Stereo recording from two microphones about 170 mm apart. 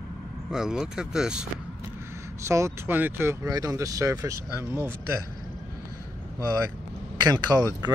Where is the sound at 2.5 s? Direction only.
15° right (ahead or behind).